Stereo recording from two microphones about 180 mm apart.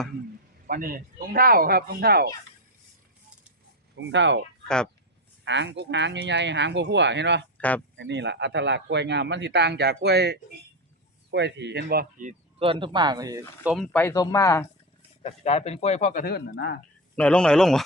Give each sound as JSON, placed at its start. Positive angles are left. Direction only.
{"t": 0.7, "sound": "speech", "side_deg": -55}
{"t": 3.9, "sound": "speech", "side_deg": -85}
{"t": 5.5, "sound": "speech", "side_deg": -80}
{"t": 11.3, "sound": "speech", "side_deg": -75}
{"t": 12.5, "sound": "speech", "side_deg": -30}
{"t": 13.7, "sound": "speech", "side_deg": 5}
{"t": 15.2, "sound": "speech", "side_deg": 35}
{"t": 16.2, "sound": "speech", "side_deg": 60}
{"t": 17.2, "sound": "speech", "side_deg": 5}